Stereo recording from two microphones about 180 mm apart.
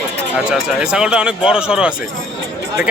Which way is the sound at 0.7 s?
5° right (ahead or behind).